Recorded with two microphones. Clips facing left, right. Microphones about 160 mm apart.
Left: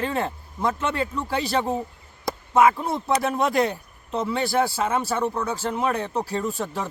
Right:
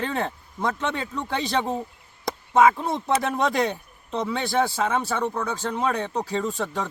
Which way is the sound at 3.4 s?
5° left (ahead or behind).